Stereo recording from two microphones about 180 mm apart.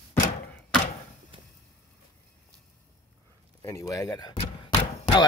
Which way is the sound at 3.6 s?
20° left (ahead or behind).